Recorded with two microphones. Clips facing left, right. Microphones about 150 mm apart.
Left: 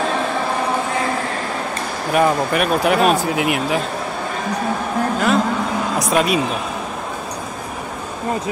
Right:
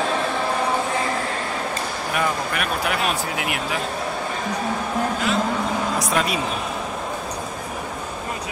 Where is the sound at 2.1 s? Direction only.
30° left (ahead or behind).